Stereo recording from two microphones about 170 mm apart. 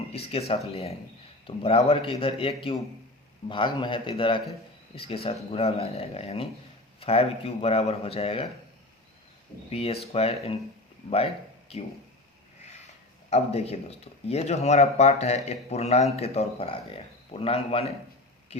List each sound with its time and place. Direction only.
0.1 s a man's voice: 35° left (ahead or behind)
9.7 s speech: 35° left (ahead or behind)
13.3 s speech: 40° left (ahead or behind)